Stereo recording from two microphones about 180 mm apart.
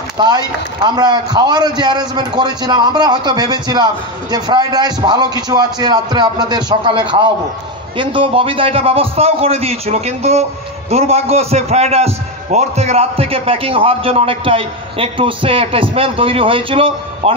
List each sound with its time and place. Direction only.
0.2 s a man's voice: 25° right (ahead or behind)